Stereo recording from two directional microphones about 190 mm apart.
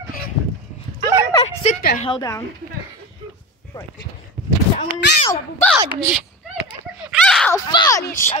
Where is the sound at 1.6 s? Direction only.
40° left (ahead or behind).